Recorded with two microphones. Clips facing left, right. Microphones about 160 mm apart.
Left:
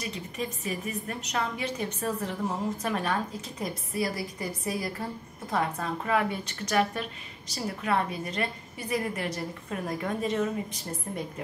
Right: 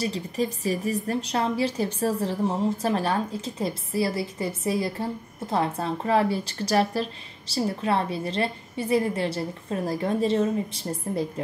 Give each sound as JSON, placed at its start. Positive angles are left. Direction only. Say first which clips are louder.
{"t": 0.0, "sound": "a woman's voice", "louder": "right 7 dB", "side_deg": -35}